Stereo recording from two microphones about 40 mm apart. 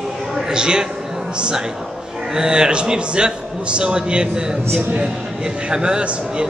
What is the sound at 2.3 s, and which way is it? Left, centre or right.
A man's voice, centre.